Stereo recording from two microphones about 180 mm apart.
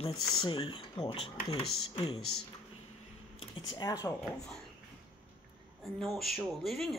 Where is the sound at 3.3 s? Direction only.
25° left (ahead or behind).